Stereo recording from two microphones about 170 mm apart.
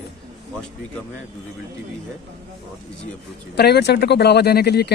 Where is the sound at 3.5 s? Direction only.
75° left (ahead or behind).